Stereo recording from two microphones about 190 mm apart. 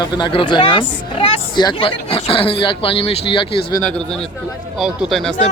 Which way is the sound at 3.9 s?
5° left (ahead or behind).